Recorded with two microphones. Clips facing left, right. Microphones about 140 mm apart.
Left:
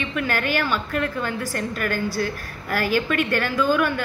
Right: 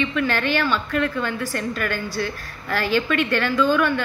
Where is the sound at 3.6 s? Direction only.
10° left (ahead or behind).